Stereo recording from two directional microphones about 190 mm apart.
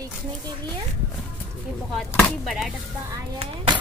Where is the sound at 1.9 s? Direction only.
Centre (ahead or behind).